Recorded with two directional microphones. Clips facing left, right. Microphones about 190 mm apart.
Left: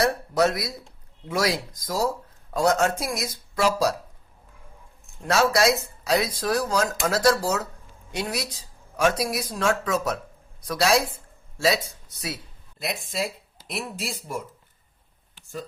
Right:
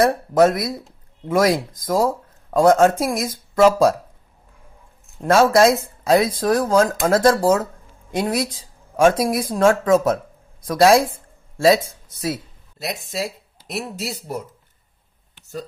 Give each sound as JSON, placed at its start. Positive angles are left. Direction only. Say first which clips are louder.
{"t": 0.0, "sound": "speech", "louder": "right 7 dB", "side_deg": -50}
{"t": 5.2, "sound": "speech", "louder": "right 7 dB", "side_deg": -50}